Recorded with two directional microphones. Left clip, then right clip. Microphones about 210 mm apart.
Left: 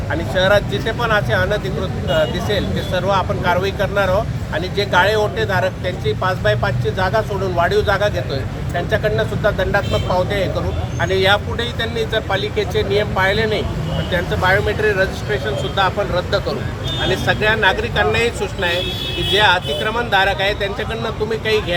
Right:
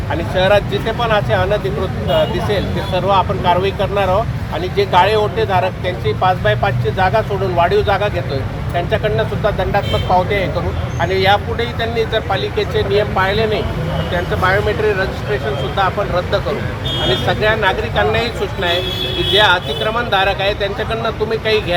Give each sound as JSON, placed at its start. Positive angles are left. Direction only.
{"t": 0.1, "sound": "speech", "side_deg": 5}
{"t": 17.2, "sound": "speech", "side_deg": 10}